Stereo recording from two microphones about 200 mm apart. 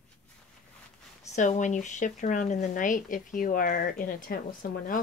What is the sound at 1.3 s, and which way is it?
Speech, 40° left (ahead or behind).